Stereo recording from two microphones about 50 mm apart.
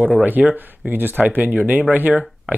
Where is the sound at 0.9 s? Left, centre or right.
Right.